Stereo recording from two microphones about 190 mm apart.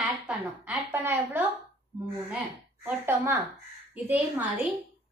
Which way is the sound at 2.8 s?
15° right (ahead or behind).